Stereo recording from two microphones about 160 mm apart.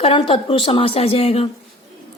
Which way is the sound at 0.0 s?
35° left (ahead or behind).